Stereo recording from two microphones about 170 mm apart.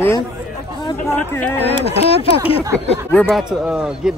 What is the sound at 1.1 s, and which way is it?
Speech, 10° left (ahead or behind).